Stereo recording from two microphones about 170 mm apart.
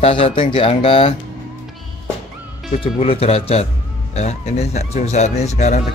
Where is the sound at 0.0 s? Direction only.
35° left (ahead or behind).